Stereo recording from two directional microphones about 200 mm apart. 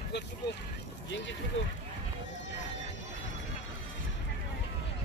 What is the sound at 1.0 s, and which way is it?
Speech, 65° left (ahead or behind).